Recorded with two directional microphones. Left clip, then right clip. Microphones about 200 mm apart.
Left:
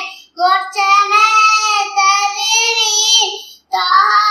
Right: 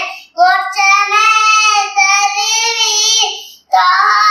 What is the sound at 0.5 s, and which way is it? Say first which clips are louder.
Child singing: left 1 dB; 15° right (ahead or behind).